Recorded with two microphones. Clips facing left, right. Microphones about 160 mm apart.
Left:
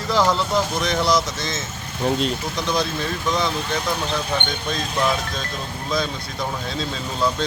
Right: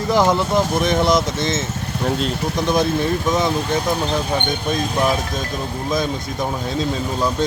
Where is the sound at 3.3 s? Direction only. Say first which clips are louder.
Right 1 dB; 20° right (ahead or behind).